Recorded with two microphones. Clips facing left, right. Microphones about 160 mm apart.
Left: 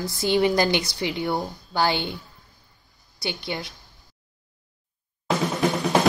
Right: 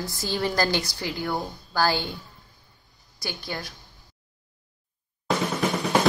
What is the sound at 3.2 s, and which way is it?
Speech, 20° left (ahead or behind).